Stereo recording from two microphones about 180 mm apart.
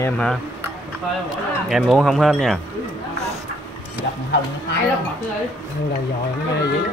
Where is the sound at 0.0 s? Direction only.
5° left (ahead or behind).